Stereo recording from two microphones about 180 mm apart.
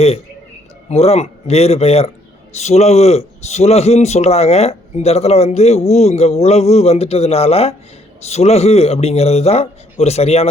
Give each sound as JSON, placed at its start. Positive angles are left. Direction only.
{"t": 0.9, "sound": "a man's voice", "side_deg": 35}